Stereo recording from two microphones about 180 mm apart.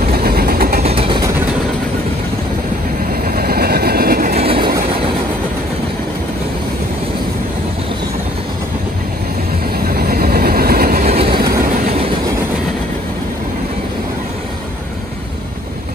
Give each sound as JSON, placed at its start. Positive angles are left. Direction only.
{"t": 0.0, "sound": "vehicle", "side_deg": -55}
{"t": 0.8, "sound": "vehicle", "side_deg": -30}
{"t": 3.1, "sound": "vehicle", "side_deg": -55}
{"t": 4.4, "sound": "train", "side_deg": -30}
{"t": 4.6, "sound": "train", "side_deg": -60}
{"t": 9.8, "sound": "train", "side_deg": -55}
{"t": 11.1, "sound": "train", "side_deg": -35}
{"t": 11.5, "sound": "train", "side_deg": -50}